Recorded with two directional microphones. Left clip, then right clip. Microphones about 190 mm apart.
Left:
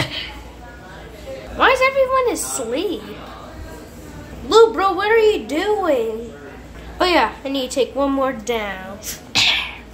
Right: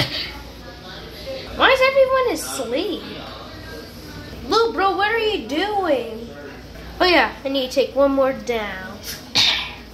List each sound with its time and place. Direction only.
1.6 s a sound: 5° left (ahead or behind)
4.5 s a woman's voice: 15° left (ahead or behind)
7.0 s a woman's voice: 10° left (ahead or behind)
9.3 s sneeze: 5° left (ahead or behind)